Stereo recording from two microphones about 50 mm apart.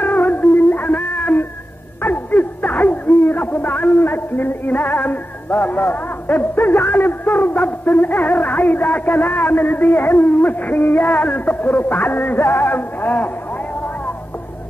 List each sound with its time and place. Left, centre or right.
0.0 s music: left
2.0 s a sound: left
6.5 s music: left